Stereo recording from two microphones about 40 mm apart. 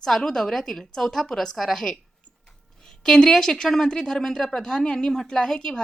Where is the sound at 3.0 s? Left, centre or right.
Centre.